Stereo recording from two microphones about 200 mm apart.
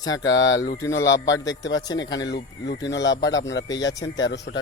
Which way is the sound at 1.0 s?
65° left (ahead or behind).